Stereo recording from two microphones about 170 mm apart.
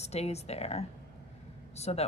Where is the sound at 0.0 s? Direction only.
40° left (ahead or behind).